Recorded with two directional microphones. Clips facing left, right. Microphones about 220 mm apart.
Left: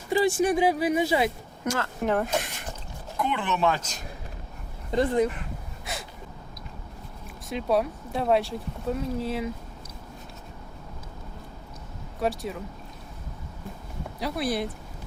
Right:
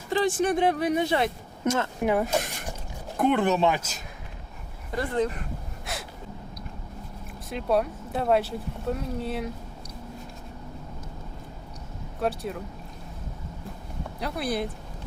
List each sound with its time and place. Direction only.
0.1 s speech: 10° left (ahead or behind)
1.6 s speech: 20° right (ahead or behind)
2.0 s speech: 10° right (ahead or behind)
3.2 s speech: 50° right (ahead or behind)
3.8 s speech: 5° right (ahead or behind)
4.9 s speech: 20° left (ahead or behind)
5.8 s gasp: centre (ahead or behind)
7.5 s speech: centre (ahead or behind)
12.2 s speech: centre (ahead or behind)
14.2 s speech: centre (ahead or behind)